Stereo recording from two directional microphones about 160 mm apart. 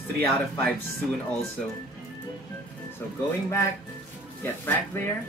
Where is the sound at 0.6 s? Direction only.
10° left (ahead or behind).